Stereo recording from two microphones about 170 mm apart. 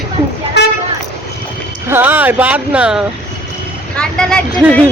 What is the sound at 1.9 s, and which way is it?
Speech, 10° right (ahead or behind).